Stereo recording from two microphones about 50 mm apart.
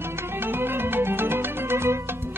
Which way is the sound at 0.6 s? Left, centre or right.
Right.